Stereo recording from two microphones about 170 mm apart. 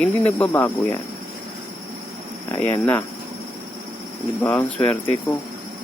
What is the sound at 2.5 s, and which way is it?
Speech, 15° left (ahead or behind).